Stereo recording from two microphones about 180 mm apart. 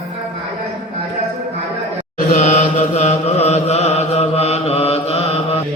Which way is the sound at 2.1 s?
45° left (ahead or behind).